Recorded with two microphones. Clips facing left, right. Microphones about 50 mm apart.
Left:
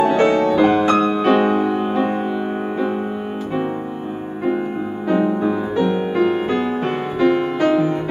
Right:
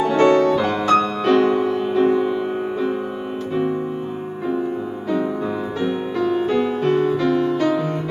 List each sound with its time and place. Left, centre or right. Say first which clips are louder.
0.0 s music: even; left
5.1 s music: left 4 dB; left